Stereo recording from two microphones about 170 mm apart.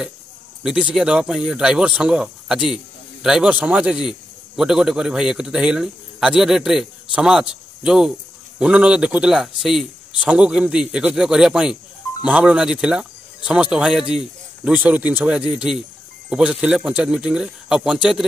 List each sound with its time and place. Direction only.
0.7 s speech: 5° right (ahead or behind)